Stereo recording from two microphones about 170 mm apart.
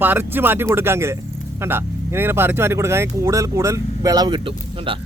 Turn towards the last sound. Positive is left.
turn(degrees=-30)  # may be behind; listen again after turning